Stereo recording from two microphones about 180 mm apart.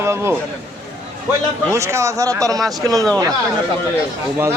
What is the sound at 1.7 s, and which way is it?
Speech, 15° right (ahead or behind).